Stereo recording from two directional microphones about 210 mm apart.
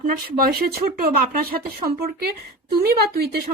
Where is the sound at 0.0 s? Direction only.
45° right (ahead or behind).